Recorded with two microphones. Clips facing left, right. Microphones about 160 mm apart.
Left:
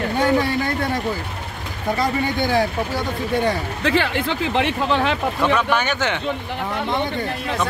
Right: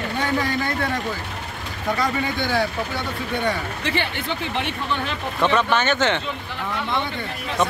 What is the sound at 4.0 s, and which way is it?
Speech, 90° left.